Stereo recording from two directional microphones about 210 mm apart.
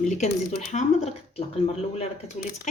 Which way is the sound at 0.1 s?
35° left (ahead or behind).